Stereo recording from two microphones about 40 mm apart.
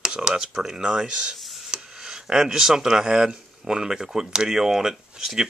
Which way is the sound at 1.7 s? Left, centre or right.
Centre.